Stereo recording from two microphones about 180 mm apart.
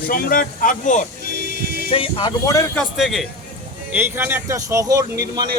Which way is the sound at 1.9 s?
30° left (ahead or behind).